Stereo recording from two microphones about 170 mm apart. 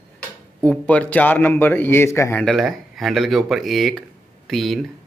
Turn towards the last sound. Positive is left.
turn(degrees=0)  # may be behind; listen again after turning